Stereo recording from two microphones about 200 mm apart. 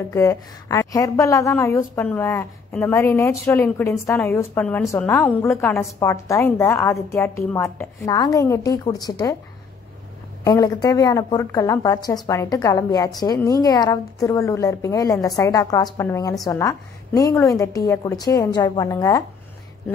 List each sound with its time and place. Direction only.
0.1 s a woman's voice: 15° left (ahead or behind)
10.4 s a woman's voice: 20° left (ahead or behind)